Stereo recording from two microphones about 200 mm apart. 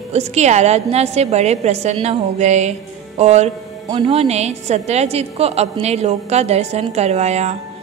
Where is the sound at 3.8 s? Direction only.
20° right (ahead or behind).